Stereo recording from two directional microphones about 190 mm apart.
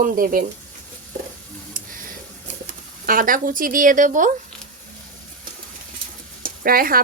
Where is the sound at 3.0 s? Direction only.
50° right (ahead or behind).